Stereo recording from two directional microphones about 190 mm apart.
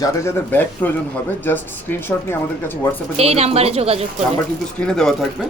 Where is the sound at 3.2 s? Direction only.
35° right (ahead or behind).